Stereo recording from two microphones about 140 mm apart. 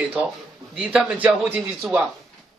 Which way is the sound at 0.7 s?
10° right (ahead or behind).